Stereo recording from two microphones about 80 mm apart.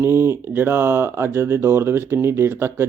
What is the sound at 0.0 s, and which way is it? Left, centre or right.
Speech, right.